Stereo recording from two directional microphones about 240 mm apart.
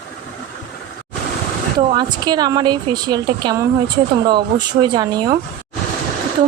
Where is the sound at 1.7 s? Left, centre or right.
Centre.